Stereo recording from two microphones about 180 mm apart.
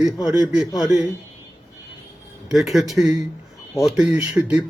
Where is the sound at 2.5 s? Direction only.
Centre (ahead or behind).